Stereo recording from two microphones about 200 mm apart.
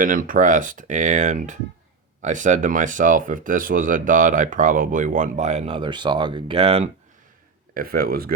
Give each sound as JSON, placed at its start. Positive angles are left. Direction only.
{"t": 0.0, "sound": "speech", "side_deg": -45}
{"t": 7.7, "sound": "speech", "side_deg": -45}